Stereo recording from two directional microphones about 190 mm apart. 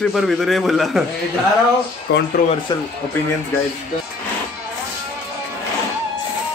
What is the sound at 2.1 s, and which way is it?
Speech, 70° left (ahead or behind).